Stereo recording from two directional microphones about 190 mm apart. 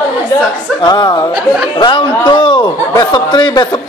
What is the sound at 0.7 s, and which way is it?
A man's voice, 20° left (ahead or behind).